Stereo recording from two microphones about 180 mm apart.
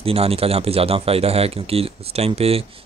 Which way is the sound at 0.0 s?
35° right (ahead or behind).